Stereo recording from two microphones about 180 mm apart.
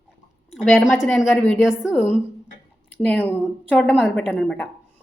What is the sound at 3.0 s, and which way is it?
A woman's voice, 10° left (ahead or behind).